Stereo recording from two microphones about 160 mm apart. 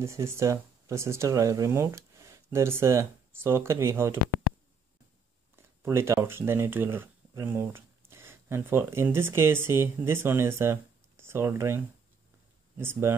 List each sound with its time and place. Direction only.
0.0 s speech: 15° right (ahead or behind)
5.6 s speech: 15° right (ahead or behind)